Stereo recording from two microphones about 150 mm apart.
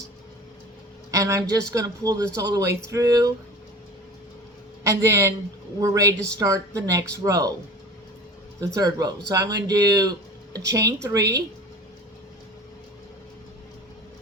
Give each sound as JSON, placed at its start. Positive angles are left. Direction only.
{"t": 1.1, "sound": "speech", "side_deg": -20}
{"t": 4.8, "sound": "a man's voice", "side_deg": -20}
{"t": 8.6, "sound": "speech", "side_deg": -25}